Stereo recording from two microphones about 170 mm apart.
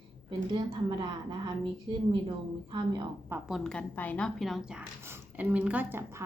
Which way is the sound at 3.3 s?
Centre (ahead or behind).